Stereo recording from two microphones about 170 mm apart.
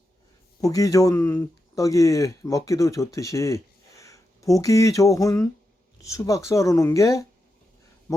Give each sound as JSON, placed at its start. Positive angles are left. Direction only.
{"t": 0.6, "sound": "speech", "side_deg": 20}